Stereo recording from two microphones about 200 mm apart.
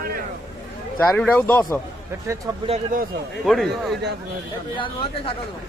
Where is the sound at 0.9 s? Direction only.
10° left (ahead or behind).